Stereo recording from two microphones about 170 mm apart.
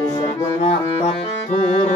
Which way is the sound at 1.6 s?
40° left (ahead or behind).